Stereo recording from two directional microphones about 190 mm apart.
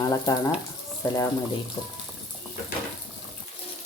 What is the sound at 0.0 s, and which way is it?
Speech, 20° left (ahead or behind).